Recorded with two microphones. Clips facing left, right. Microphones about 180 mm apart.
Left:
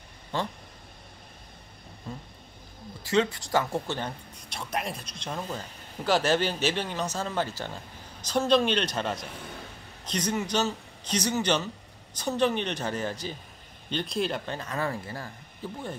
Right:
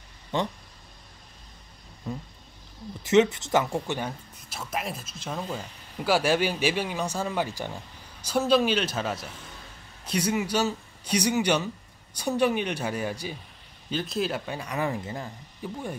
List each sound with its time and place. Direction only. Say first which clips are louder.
3.0 s speech: right 5 dB; 20° right (ahead or behind)
4.5 s a man's voice: even; 5° right (ahead or behind)